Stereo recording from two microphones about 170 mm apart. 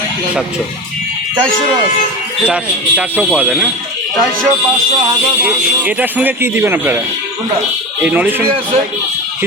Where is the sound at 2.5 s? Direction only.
10° right (ahead or behind).